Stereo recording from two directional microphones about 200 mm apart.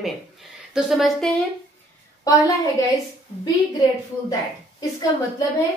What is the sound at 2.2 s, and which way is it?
Speech, 15° left (ahead or behind).